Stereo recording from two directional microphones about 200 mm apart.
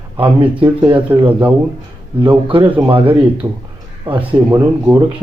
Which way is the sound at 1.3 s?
10° right (ahead or behind).